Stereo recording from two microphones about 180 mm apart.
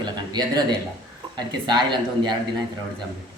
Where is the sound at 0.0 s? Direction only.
20° right (ahead or behind).